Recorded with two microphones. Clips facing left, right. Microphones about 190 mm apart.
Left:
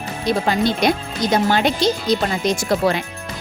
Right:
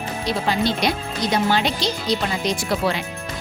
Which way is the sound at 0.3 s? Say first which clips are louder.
Left 4 dB; 50° left (ahead or behind).